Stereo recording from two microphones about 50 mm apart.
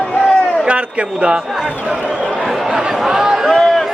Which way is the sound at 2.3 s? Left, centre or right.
Centre.